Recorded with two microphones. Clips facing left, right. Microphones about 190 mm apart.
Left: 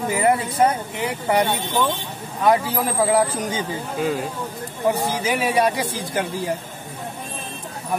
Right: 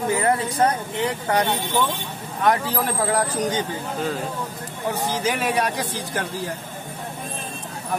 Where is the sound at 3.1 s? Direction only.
5° left (ahead or behind).